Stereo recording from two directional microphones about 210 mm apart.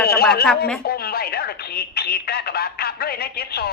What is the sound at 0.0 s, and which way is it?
Speech, 45° left (ahead or behind).